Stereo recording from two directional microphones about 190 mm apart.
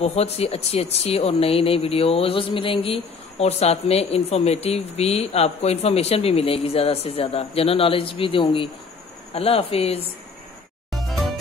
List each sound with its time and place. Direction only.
0.0 s speech: 35° left (ahead or behind)
10.9 s music: centre (ahead or behind)